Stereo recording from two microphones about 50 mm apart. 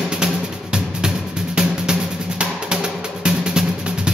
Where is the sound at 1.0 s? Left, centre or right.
Centre.